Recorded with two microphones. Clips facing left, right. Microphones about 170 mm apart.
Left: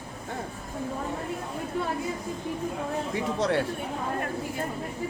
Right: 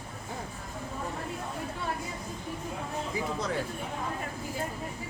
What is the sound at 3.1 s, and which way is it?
Speech, 75° left (ahead or behind).